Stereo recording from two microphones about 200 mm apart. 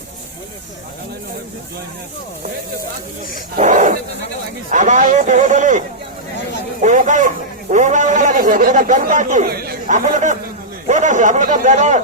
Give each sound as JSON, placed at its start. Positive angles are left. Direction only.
{"t": 3.6, "sound": "a man's voice", "side_deg": -40}
{"t": 6.8, "sound": "a man's voice", "side_deg": -40}